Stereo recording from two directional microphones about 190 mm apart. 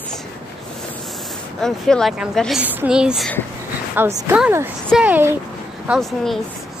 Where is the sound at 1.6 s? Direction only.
5° left (ahead or behind).